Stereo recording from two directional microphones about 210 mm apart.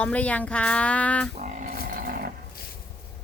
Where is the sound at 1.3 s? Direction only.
35° right (ahead or behind).